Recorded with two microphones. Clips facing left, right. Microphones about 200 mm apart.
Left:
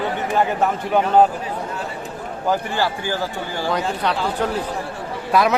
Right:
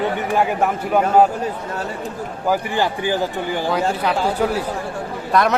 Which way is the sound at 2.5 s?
15° right (ahead or behind).